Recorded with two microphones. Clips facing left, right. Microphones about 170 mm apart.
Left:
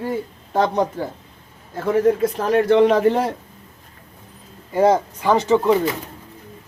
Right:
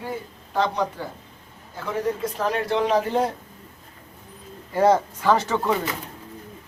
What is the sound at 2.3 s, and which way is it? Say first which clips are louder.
Speech: left 7 dB; 55° left (ahead or behind).